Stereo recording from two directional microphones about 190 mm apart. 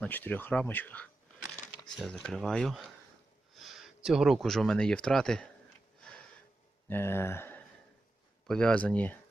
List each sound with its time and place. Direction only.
0.0 s speech: 10° left (ahead or behind)
6.8 s speech: 10° left (ahead or behind)